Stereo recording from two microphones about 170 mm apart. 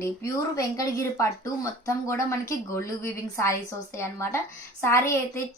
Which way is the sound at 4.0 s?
15° left (ahead or behind).